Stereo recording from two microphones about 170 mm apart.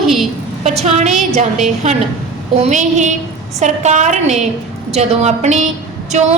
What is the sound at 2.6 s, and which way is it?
A woman's voice, 45° right (ahead or behind).